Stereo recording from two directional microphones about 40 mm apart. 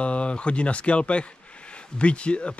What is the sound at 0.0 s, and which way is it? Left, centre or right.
Speech, left.